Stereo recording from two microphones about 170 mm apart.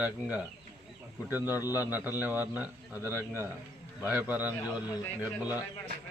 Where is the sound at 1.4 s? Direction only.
20° left (ahead or behind).